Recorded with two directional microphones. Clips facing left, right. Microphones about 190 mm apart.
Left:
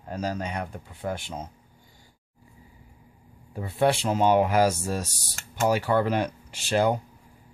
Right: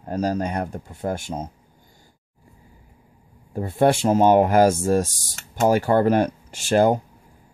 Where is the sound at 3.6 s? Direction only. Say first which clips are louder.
Right 5 dB; 45° right (ahead or behind).